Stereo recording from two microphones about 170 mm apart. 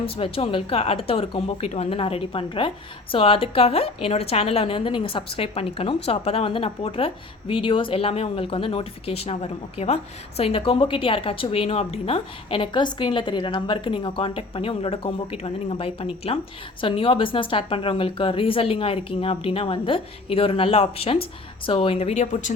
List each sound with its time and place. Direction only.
0.0 s a woman's voice: 35° left (ahead or behind)